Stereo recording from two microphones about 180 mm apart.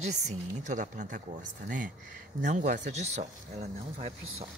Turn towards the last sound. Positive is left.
turn(degrees=-40)  # may be behind; listen again after turning